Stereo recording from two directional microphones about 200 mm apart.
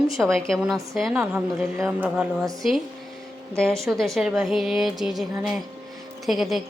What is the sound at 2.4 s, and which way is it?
Speech, 15° right (ahead or behind).